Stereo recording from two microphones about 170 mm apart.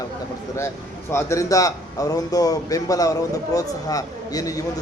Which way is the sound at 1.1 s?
15° left (ahead or behind).